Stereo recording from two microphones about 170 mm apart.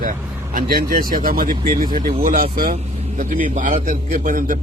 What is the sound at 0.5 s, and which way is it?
A man's voice, 55° right (ahead or behind).